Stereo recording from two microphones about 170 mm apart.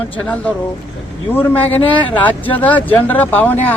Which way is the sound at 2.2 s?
10° left (ahead or behind).